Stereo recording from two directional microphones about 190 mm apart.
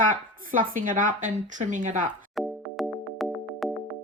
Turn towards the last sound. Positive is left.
turn(degrees=0)  # may be behind; listen again after turning